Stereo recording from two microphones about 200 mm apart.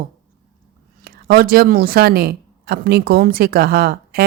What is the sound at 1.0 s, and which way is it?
Speech, 50° right (ahead or behind).